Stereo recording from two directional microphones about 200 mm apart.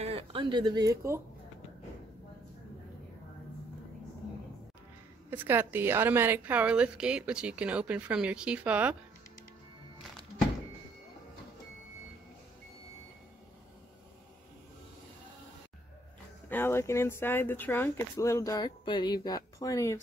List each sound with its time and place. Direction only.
0.0 s speech: 30° right (ahead or behind)
5.3 s a woman's voice: 10° right (ahead or behind)
16.4 s speech: 10° left (ahead or behind)